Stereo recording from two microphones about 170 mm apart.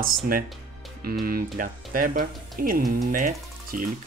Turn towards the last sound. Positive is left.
turn(degrees=-55)  # may be behind; listen again after turning